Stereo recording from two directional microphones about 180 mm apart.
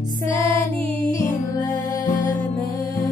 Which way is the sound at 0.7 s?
10° left (ahead or behind).